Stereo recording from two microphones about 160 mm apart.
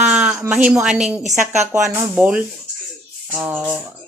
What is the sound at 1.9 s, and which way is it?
Speech, 10° right (ahead or behind).